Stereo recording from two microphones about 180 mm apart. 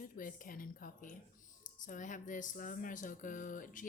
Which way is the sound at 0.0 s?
50° left (ahead or behind).